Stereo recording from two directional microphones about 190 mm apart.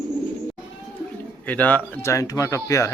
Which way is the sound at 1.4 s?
10° left (ahead or behind).